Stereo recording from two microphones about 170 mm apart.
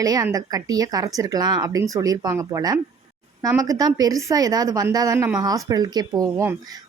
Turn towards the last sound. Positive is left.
turn(degrees=-20)  # may be behind; listen again after turning